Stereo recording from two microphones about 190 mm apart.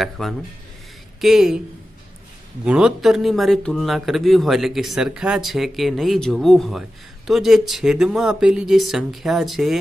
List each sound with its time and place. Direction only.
0.0 s speech: centre (ahead or behind)
2.6 s speech: 5° right (ahead or behind)